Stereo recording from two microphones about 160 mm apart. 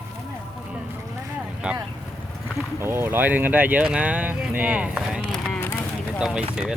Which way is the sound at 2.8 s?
15° right (ahead or behind).